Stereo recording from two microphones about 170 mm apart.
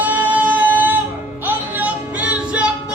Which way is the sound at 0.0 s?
10° right (ahead or behind).